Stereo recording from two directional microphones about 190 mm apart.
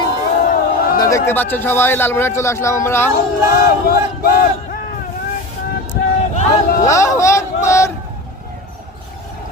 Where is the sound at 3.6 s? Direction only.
50° left (ahead or behind).